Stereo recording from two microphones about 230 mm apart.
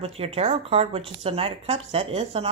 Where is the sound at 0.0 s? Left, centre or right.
Right.